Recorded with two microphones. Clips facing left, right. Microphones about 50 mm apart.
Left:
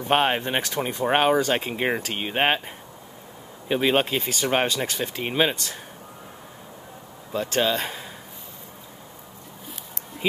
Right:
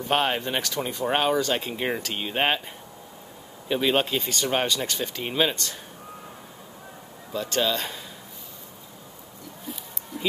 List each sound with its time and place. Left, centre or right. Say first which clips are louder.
0.1 s speech: left 3 dB; left
3.6 s speech: left 2 dB; centre
7.3 s speech: left 2 dB; left